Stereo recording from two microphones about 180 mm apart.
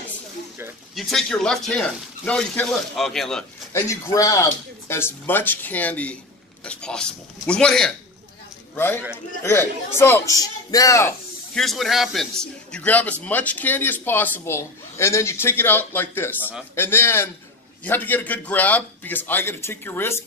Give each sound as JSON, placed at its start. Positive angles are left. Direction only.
{"t": 0.9, "sound": "speech", "side_deg": 5}
{"t": 3.7, "sound": "a man's voice", "side_deg": 15}
{"t": 11.5, "sound": "a man's voice", "side_deg": 0}